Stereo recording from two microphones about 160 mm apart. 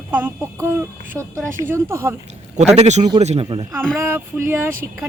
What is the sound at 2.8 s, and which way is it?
Speech, 45° right (ahead or behind).